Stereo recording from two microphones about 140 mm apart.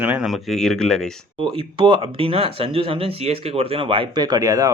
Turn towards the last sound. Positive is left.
turn(degrees=-25)  # may be behind; listen again after turning